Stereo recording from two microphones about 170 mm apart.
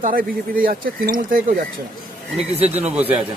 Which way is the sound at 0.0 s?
55° right (ahead or behind).